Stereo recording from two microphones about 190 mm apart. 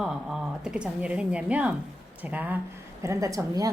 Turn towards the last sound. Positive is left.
turn(degrees=-20)  # may be behind; listen again after turning